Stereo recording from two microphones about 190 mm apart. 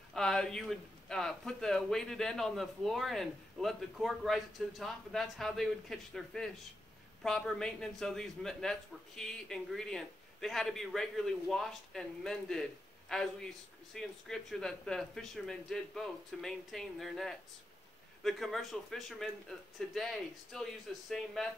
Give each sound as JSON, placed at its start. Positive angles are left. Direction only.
{"t": 0.1, "sound": "speech", "side_deg": 5}